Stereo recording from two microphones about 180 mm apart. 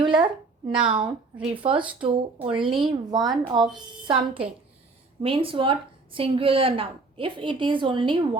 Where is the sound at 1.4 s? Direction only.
30° right (ahead or behind).